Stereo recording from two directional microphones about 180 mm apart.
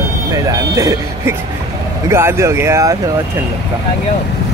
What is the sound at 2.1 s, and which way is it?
Speech, 15° right (ahead or behind).